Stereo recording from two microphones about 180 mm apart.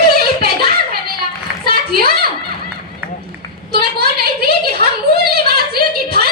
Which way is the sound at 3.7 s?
60° right (ahead or behind).